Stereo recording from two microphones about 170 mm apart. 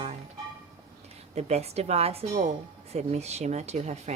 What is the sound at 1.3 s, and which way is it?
Speech, 40° right (ahead or behind).